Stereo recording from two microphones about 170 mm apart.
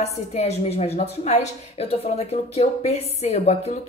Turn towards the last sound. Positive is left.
turn(degrees=40)  # may be behind; listen again after turning